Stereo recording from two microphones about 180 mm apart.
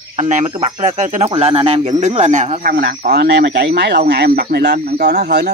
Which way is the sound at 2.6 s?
55° right (ahead or behind).